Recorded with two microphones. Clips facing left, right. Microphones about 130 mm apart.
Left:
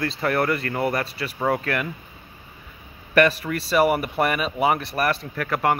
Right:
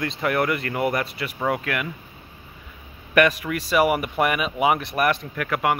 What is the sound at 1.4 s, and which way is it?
Speech, 10° right (ahead or behind).